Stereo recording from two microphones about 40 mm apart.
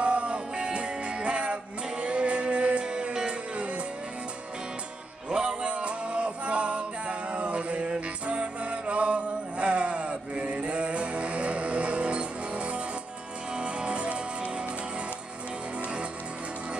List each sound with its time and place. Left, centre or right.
0.0 s music: right
5.3 s male singing: centre
8.3 s music: right